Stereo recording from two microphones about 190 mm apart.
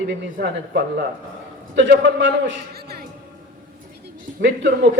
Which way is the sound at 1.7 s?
70° right (ahead or behind).